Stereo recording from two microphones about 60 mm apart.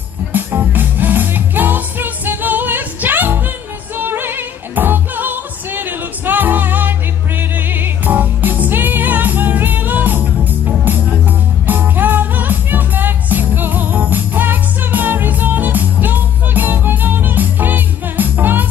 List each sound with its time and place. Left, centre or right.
0.3 s music: right